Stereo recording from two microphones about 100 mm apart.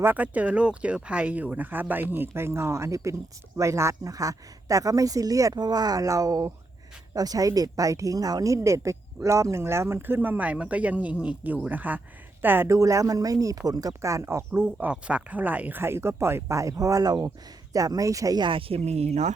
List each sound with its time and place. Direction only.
0.0 s speech: 15° right (ahead or behind); by 18.4 s 35° right (ahead or behind)
18.4 s speech: 70° right (ahead or behind); by 19.2 s 90° right